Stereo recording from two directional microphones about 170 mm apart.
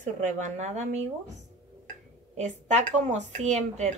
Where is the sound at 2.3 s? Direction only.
45° right (ahead or behind).